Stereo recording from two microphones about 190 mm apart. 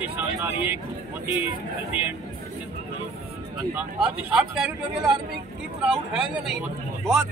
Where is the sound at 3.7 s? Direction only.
5° right (ahead or behind).